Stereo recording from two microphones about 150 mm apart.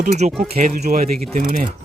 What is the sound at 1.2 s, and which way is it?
Speech, 50° right (ahead or behind).